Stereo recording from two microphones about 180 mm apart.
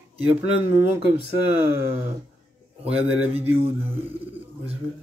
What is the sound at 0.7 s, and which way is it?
Speech, 10° right (ahead or behind).